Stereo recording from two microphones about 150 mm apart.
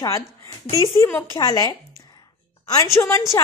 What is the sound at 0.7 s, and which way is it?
Speech, 45° left (ahead or behind).